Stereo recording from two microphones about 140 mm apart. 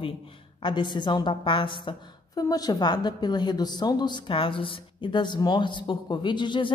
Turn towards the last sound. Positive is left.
turn(degrees=35)  # may be behind; listen again after turning